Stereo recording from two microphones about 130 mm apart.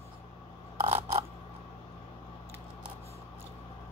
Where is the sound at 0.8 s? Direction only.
50° right (ahead or behind).